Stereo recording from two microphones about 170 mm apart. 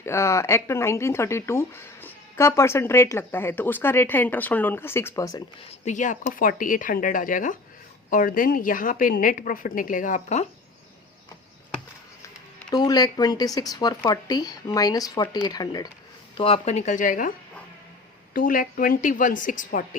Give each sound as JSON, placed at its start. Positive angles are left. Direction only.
{"t": 0.0, "sound": "speech", "side_deg": 15}
{"t": 5.8, "sound": "a woman's voice", "side_deg": 45}
{"t": 12.7, "sound": "speech", "side_deg": 25}
{"t": 16.4, "sound": "a woman's voice", "side_deg": 35}
{"t": 18.3, "sound": "a woman's voice", "side_deg": 55}